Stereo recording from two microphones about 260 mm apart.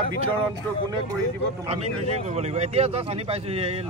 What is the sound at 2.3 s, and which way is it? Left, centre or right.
Speech, right.